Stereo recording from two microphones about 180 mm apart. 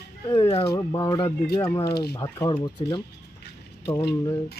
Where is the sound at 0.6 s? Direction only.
20° left (ahead or behind).